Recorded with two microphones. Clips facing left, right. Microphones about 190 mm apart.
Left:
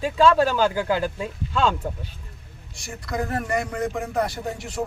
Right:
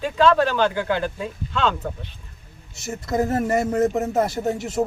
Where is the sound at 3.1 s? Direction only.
25° right (ahead or behind).